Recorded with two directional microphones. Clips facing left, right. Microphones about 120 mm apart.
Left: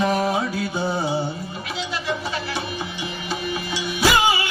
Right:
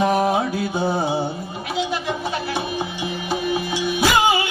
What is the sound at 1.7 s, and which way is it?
Music, 50° right (ahead or behind).